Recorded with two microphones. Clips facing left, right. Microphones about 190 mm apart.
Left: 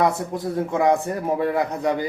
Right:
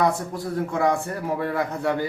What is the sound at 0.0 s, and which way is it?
A man's voice, 20° left (ahead or behind).